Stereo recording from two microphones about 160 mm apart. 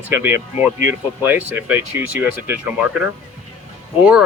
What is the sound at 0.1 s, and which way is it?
Speech, 15° right (ahead or behind).